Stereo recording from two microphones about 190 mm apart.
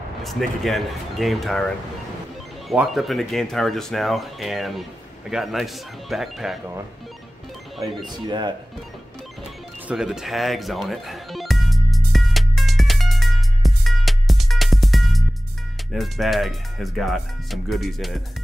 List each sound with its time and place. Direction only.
0.2 s speech: centre (ahead or behind)
2.7 s speech: centre (ahead or behind)
8.3 s speech: 25° right (ahead or behind)
9.8 s music: 5° right (ahead or behind)
15.9 s speech: centre (ahead or behind)